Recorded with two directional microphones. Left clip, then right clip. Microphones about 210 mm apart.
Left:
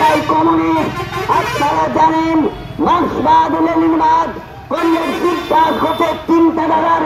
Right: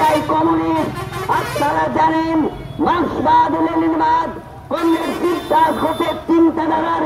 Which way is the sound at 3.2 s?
45° left (ahead or behind).